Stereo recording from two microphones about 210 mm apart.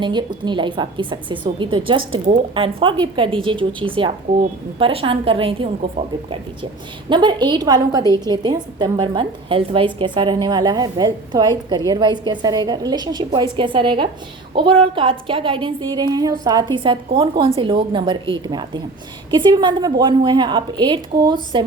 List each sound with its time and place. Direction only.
0.0 s a woman's voice: 20° right (ahead or behind)
7.1 s a woman's voice: 20° right (ahead or behind)